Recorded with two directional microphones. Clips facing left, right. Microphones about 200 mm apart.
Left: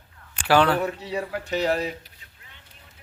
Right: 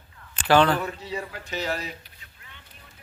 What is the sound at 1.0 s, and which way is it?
Speech, 60° left (ahead or behind).